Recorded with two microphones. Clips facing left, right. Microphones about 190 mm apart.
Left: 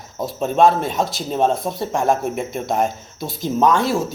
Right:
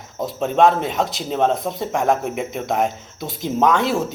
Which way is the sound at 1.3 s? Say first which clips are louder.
Even; 65° right (ahead or behind).